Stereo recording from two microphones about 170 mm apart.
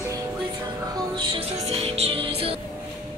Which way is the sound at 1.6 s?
35° right (ahead or behind).